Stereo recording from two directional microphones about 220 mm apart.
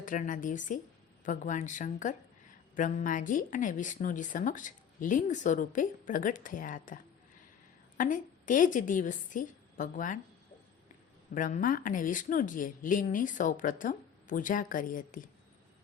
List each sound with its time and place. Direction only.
0.0 s a woman's voice: 35° left (ahead or behind)
11.3 s speech: 35° left (ahead or behind)